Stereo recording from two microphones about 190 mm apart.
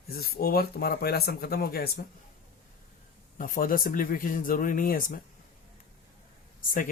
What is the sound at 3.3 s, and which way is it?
Speech, 45° left (ahead or behind).